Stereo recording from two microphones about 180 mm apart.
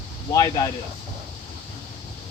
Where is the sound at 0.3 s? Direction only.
20° left (ahead or behind).